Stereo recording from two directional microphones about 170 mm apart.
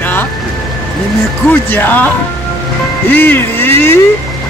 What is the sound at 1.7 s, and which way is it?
Speech, 10° left (ahead or behind).